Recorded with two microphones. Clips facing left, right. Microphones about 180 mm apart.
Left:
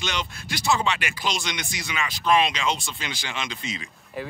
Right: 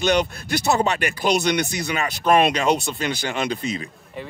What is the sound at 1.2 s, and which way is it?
Speech, 60° right (ahead or behind).